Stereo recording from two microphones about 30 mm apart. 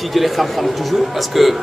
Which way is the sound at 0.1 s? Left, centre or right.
Centre.